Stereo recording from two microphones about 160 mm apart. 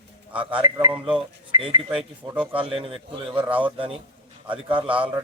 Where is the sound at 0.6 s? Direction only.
25° right (ahead or behind).